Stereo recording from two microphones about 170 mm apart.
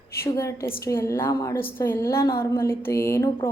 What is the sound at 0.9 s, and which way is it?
Speech, 15° left (ahead or behind).